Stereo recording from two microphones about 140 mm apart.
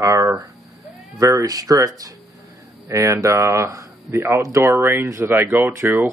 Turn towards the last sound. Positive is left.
turn(degrees=-15)  # may be behind; listen again after turning